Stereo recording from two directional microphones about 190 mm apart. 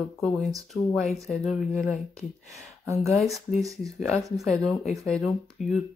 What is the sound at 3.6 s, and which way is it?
Speech, 15° right (ahead or behind).